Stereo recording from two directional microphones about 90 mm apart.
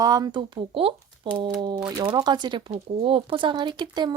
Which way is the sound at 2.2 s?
50° right (ahead or behind).